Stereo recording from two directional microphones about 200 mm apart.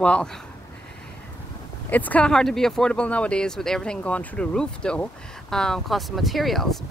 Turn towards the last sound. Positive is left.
turn(degrees=0)  # may be behind; listen again after turning